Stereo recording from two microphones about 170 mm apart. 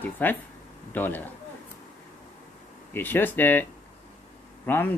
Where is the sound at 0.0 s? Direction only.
10° left (ahead or behind).